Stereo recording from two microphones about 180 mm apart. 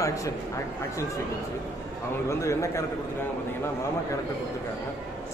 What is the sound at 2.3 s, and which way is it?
Speech, 15° left (ahead or behind).